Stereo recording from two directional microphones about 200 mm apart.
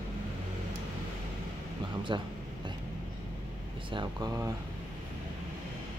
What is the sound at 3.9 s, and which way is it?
Speech, 20° right (ahead or behind).